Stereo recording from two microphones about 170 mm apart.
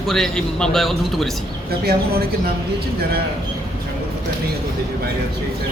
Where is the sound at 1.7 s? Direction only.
65° right (ahead or behind).